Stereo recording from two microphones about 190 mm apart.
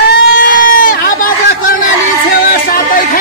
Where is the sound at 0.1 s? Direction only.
50° left (ahead or behind).